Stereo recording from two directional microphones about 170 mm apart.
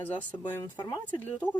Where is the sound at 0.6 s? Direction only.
25° left (ahead or behind).